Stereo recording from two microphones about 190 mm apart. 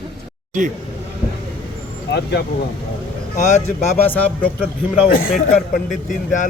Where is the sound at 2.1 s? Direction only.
60° left (ahead or behind).